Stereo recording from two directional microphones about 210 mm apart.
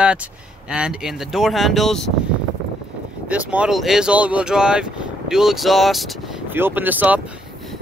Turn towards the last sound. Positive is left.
turn(degrees=-10)  # may be behind; listen again after turning